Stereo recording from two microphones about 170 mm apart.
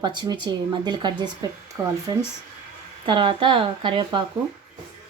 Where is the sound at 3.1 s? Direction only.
30° right (ahead or behind).